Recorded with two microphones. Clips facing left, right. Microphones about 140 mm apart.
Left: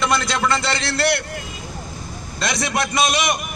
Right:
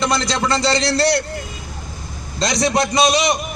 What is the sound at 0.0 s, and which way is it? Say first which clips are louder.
Speech: right 1 dB; 30° right (ahead or behind).